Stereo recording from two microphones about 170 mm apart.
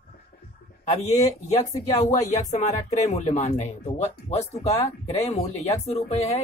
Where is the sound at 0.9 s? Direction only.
40° left (ahead or behind).